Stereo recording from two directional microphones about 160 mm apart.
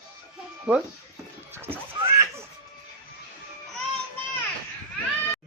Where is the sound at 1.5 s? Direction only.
15° right (ahead or behind).